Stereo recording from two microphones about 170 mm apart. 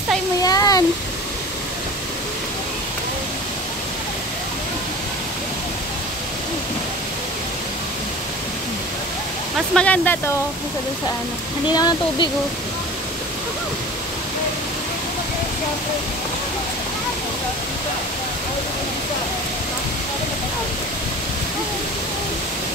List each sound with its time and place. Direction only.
0.4 s a sound: 20° left (ahead or behind)
9.8 s speech: 10° left (ahead or behind)
11.7 s speech: 25° left (ahead or behind)